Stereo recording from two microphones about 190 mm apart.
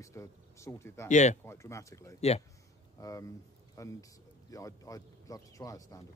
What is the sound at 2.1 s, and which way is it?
Speech, 35° left (ahead or behind).